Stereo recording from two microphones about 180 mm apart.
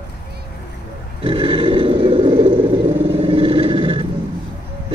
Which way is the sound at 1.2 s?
30° right (ahead or behind).